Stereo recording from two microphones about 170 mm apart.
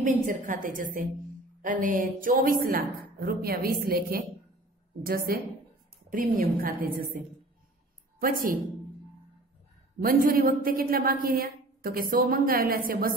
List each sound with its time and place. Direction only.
0.0 s a woman's voice: 50° right (ahead or behind)
8.2 s a woman's voice: 55° right (ahead or behind)
9.9 s a woman's voice: 55° right (ahead or behind)